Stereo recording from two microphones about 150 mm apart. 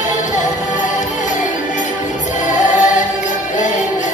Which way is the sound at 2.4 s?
55° left (ahead or behind).